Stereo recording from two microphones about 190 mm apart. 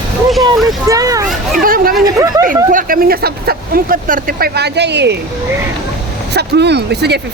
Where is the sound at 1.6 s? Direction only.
50° right (ahead or behind).